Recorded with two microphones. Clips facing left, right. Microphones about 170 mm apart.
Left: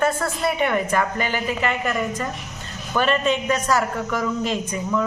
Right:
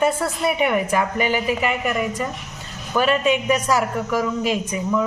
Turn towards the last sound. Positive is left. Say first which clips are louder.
# right 2 dB
turn(degrees=-10)  # may be behind; listen again after turning